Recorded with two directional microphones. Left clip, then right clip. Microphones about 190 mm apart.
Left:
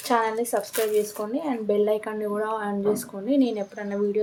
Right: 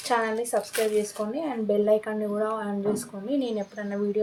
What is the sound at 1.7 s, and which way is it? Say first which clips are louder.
A woman's voice: right 1 dB; 35° left (ahead or behind).